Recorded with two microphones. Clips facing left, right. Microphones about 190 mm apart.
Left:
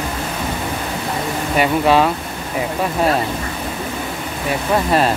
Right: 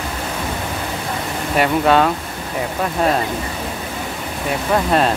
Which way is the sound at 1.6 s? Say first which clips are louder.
Even; centre (ahead or behind).